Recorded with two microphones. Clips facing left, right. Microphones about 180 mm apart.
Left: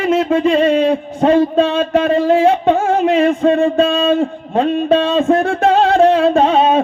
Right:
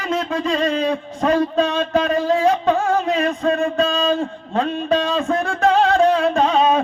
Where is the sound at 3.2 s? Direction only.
30° left (ahead or behind).